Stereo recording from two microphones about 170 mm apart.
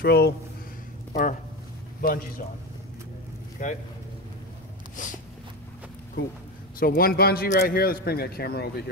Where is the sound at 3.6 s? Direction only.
50° left (ahead or behind).